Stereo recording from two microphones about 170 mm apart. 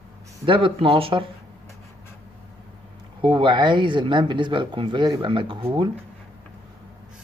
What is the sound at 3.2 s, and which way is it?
Speech, 30° right (ahead or behind).